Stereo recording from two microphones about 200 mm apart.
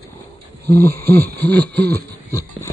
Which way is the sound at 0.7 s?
10° left (ahead or behind).